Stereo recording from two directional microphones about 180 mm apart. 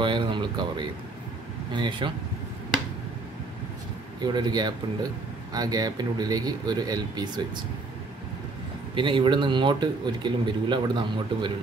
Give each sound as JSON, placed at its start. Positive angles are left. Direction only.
{"t": 0.0, "sound": "speech", "side_deg": -25}
{"t": 4.2, "sound": "speech", "side_deg": -25}
{"t": 8.9, "sound": "speech", "side_deg": -25}